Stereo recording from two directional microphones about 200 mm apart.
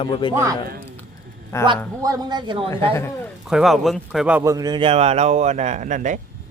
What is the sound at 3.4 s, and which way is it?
A man's voice, centre (ahead or behind).